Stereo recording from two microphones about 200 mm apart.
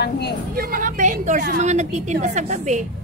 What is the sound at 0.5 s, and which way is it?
A woman's voice, 45° right (ahead or behind).